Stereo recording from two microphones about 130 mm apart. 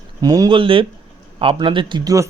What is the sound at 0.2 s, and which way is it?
Speech, 30° right (ahead or behind).